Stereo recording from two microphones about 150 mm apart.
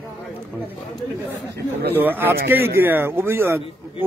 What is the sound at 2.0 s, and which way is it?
A man's voice, 15° right (ahead or behind).